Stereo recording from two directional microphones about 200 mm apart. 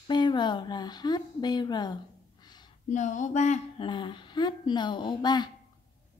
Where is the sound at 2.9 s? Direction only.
35° left (ahead or behind).